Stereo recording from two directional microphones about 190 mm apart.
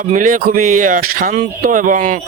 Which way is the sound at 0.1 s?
45° right (ahead or behind).